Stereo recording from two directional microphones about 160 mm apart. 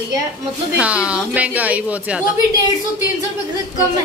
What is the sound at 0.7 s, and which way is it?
A woman's voice, 5° right (ahead or behind).